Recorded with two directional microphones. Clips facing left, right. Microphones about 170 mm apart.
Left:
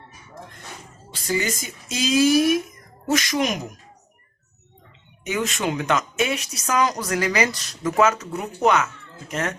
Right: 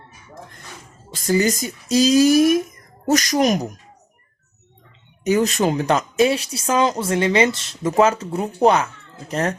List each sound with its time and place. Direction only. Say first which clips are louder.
1.1 s speech: right 7 dB; 40° right (ahead or behind)
5.2 s speech: right 7 dB; 40° right (ahead or behind)